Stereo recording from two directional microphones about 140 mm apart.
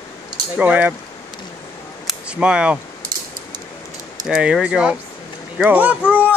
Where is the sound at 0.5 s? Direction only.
10° right (ahead or behind).